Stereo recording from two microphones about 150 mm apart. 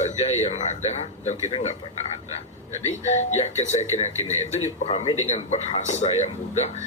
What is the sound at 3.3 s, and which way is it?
Speech, 50° left (ahead or behind).